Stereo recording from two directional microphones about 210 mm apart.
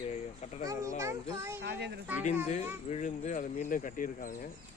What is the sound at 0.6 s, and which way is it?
Speech, 15° right (ahead or behind).